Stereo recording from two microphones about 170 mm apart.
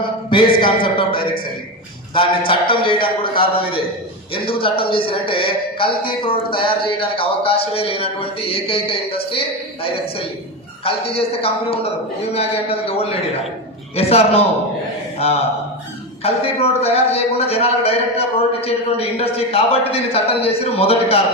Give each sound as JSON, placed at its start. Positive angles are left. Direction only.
{"t": 0.3, "sound": "a man's voice", "side_deg": 30}
{"t": 16.2, "sound": "speech", "side_deg": 35}